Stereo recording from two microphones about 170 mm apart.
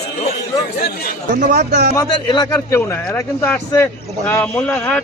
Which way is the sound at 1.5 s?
70° right (ahead or behind).